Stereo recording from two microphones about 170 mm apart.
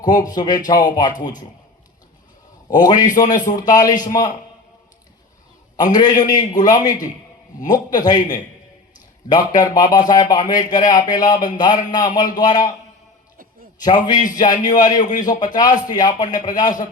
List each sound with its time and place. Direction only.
0.0 s a man's voice: 25° left (ahead or behind)
2.6 s a man's voice: 25° left (ahead or behind)
3.2 s a man's voice: 50° left (ahead or behind)
3.5 s a man's voice: 25° left (ahead or behind)
5.7 s a man's voice: 25° left (ahead or behind)
9.6 s a man's voice: 20° left (ahead or behind)
13.7 s a man's voice: 25° left (ahead or behind)
15.0 s a man's voice: 50° left (ahead or behind)
15.3 s a man's voice: 25° left (ahead or behind)